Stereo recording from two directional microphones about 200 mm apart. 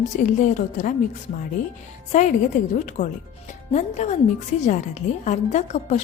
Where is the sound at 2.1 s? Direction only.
35° left (ahead or behind).